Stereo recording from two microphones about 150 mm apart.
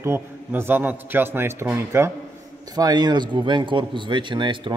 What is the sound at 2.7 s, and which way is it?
Speech, 25° right (ahead or behind).